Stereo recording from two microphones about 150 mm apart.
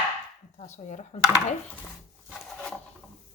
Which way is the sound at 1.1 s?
45° left (ahead or behind).